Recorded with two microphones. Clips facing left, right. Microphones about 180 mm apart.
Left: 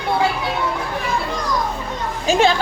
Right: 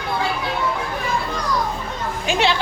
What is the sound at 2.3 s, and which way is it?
Music, 45° left (ahead or behind).